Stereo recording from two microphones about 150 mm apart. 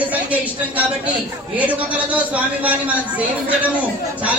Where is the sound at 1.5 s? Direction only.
10° right (ahead or behind).